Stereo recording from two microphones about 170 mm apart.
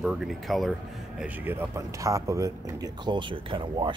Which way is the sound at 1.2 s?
10° right (ahead or behind).